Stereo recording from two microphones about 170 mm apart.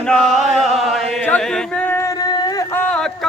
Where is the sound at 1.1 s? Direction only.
5° left (ahead or behind); by 2.8 s 20° left (ahead or behind).